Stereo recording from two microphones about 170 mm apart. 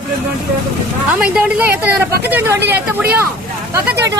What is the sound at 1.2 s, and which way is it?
A woman's voice, 5° right (ahead or behind).